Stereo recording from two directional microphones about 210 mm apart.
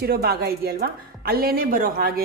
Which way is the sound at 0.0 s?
50° right (ahead or behind).